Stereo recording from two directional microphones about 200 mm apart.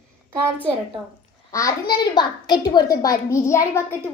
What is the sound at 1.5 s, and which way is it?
A woman's voice, 20° left (ahead or behind).